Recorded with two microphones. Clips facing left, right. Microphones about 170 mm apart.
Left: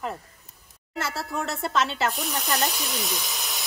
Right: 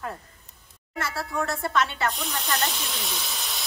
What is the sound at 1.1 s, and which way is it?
Speech, 25° left (ahead or behind).